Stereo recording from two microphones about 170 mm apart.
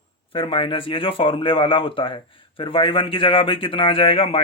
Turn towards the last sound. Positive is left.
turn(degrees=30)  # may be behind; listen again after turning